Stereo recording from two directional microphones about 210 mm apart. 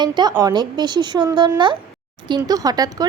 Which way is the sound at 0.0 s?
20° right (ahead or behind).